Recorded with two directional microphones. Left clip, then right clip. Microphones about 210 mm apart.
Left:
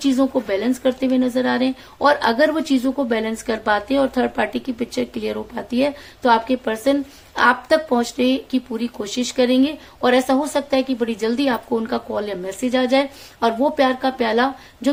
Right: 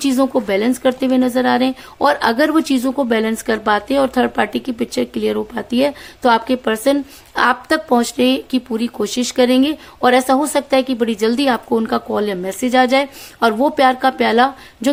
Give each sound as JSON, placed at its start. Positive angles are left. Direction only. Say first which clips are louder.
{"t": 0.0, "sound": "speech", "louder": "right 3 dB", "side_deg": -40}